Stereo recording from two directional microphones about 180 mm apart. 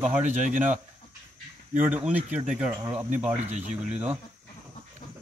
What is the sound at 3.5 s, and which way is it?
Speech, 40° right (ahead or behind).